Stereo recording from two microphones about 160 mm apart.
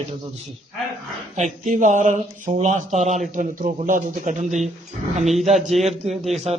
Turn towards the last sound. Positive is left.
turn(degrees=-40)  # may be behind; listen again after turning